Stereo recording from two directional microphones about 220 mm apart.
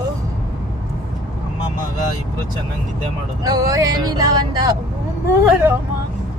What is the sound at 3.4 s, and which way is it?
Speech, 15° right (ahead or behind).